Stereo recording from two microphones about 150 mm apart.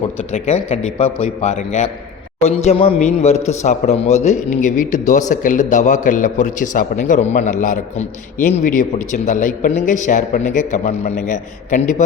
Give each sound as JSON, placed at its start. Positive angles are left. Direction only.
{"t": 0.3, "sound": "a man's voice", "side_deg": 45}